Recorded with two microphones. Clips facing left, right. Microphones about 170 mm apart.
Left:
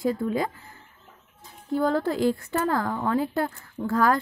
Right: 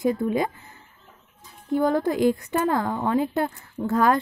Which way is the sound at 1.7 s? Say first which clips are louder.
Right 2 dB; 15° right (ahead or behind).